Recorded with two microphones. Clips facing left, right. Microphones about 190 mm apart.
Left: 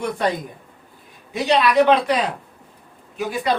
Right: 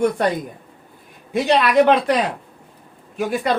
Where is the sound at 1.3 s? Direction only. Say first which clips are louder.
Right 2 dB; 50° right (ahead or behind).